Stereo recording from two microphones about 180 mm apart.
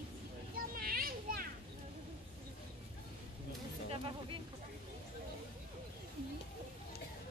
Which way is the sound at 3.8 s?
30° right (ahead or behind).